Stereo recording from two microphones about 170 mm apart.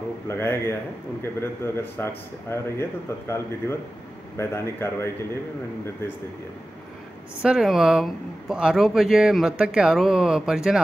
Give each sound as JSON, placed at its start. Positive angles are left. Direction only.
{"t": 0.3, "sound": "speech", "side_deg": 15}
{"t": 7.4, "sound": "speech", "side_deg": 0}